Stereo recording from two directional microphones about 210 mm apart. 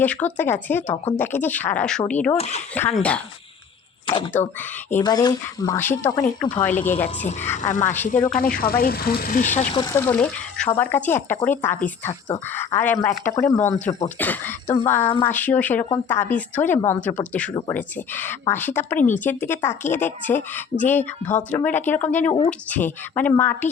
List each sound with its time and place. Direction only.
0.0 s speech: 10° left (ahead or behind)
2.4 s speech: 30° left (ahead or behind)
2.7 s speech: 5° left (ahead or behind)
4.0 s speech: 25° left (ahead or behind); by 8.4 s 5° left (ahead or behind)
8.6 s speech: 45° left (ahead or behind)
9.7 s speech: 15° left (ahead or behind)